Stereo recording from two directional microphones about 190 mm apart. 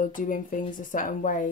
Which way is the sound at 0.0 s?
45° left (ahead or behind).